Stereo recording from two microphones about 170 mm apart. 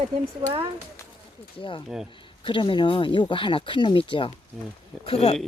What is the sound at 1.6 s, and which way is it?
Speech, 30° left (ahead or behind).